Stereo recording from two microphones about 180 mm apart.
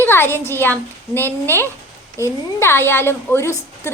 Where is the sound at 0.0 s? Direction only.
10° left (ahead or behind).